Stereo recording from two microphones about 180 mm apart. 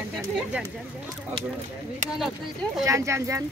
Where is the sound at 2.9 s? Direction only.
15° right (ahead or behind).